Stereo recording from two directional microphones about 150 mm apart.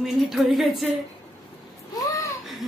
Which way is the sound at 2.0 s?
20° left (ahead or behind).